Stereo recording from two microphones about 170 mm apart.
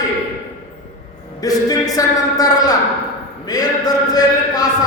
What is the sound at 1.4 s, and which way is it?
A man's voice, 20° left (ahead or behind).